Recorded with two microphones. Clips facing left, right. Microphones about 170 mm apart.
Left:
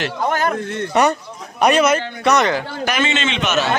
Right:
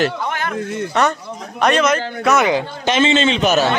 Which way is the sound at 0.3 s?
40° left (ahead or behind).